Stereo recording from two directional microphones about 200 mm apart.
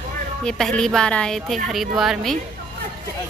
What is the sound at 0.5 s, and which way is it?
A woman's voice, 5° left (ahead or behind).